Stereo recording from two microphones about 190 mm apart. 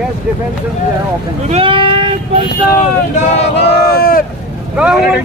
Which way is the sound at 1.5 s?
30° right (ahead or behind).